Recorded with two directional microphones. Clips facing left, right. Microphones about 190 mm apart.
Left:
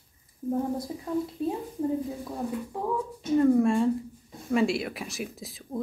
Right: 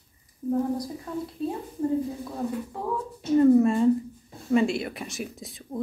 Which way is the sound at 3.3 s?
5° right (ahead or behind).